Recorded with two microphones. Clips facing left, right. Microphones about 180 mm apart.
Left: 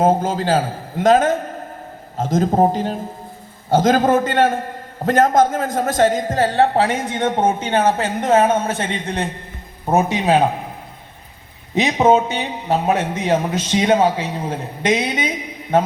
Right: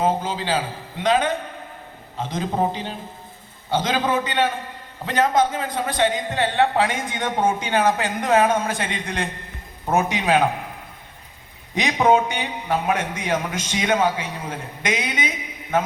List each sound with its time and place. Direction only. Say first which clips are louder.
0.0 s a man's voice: left 6 dB; 45° left (ahead or behind); by 10.5 s 20° left (ahead or behind)
11.8 s a man's voice: left 4 dB; 20° left (ahead or behind)